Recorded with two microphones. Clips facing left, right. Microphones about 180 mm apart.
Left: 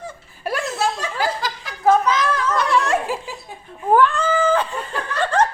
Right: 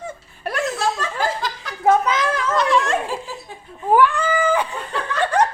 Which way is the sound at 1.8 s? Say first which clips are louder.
Left 1 dB; 25° right (ahead or behind).